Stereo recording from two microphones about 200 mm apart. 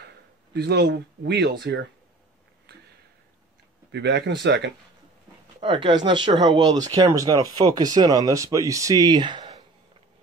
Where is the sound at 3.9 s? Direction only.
60° right (ahead or behind).